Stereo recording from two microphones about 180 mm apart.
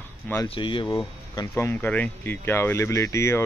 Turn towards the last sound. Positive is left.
turn(degrees=15)  # may be behind; listen again after turning